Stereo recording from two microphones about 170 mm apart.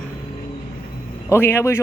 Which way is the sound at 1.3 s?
15° left (ahead or behind).